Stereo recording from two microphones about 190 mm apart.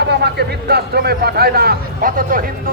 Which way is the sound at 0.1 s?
60° right (ahead or behind).